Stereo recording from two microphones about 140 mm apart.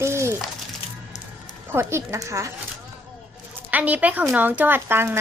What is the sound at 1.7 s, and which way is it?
Speech, 20° right (ahead or behind).